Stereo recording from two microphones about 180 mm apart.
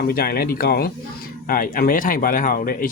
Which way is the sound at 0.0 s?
55° left (ahead or behind).